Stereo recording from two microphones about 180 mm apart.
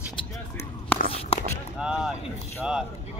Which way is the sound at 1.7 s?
5° right (ahead or behind).